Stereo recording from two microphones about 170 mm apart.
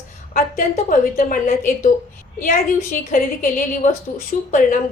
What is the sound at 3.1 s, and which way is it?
A woman's voice, 55° left (ahead or behind).